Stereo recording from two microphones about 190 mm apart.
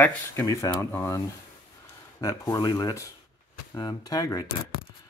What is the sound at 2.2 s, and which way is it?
Speech, 20° left (ahead or behind).